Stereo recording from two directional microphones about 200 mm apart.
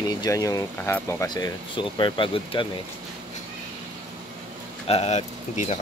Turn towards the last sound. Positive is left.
turn(degrees=35)  # may be behind; listen again after turning